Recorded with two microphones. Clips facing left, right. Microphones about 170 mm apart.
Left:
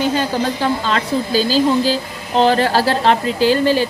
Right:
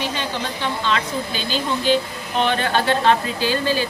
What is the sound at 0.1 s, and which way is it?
Speech, 40° left (ahead or behind).